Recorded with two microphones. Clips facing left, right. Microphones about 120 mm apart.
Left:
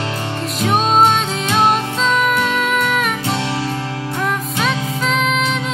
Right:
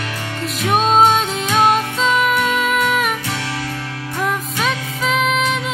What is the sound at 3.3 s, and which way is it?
Music, 25° left (ahead or behind).